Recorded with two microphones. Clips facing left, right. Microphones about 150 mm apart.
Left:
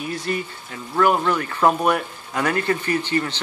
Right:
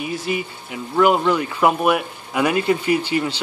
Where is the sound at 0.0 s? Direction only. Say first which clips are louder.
Right 2 dB; 5° right (ahead or behind).